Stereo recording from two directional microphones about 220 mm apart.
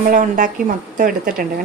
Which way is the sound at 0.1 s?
35° right (ahead or behind).